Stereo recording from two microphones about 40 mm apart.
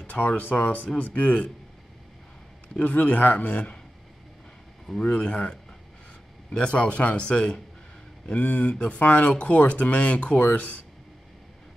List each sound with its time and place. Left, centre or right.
0.0 s a man's voice: left
2.8 s a man's voice: left
5.0 s a man's voice: left